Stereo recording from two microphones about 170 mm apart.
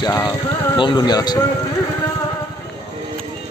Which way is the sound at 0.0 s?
25° left (ahead or behind).